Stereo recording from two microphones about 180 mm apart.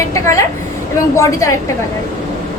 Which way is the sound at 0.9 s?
15° left (ahead or behind).